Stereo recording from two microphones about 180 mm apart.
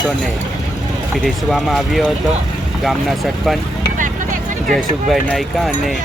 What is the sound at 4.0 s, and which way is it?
Music, 45° right (ahead or behind).